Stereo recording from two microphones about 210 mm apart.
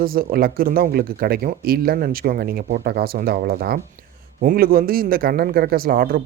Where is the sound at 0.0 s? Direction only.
45° right (ahead or behind).